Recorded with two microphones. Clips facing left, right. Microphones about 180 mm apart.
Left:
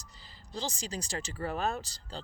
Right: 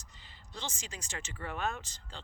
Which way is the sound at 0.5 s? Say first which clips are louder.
Left 7 dB; 35° left (ahead or behind).